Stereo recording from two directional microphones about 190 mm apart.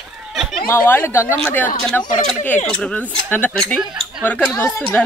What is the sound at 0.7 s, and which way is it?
Speech, 10° left (ahead or behind).